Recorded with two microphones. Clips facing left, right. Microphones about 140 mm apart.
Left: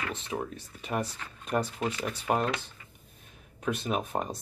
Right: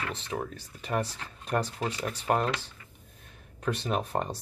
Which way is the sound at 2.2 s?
Centre (ahead or behind).